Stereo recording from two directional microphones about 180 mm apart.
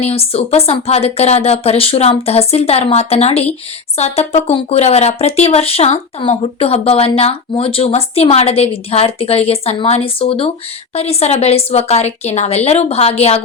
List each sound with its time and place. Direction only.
0.0 s speech: 35° left (ahead or behind)